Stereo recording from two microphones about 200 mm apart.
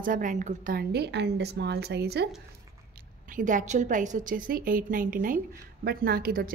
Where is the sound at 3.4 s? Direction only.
40° right (ahead or behind).